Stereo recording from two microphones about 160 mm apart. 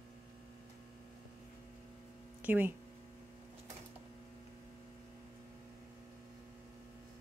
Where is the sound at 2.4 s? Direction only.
10° right (ahead or behind).